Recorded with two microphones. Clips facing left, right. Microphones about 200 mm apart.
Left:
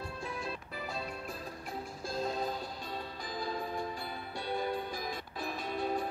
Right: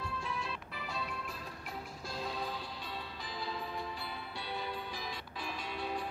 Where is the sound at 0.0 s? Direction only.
45° left (ahead or behind).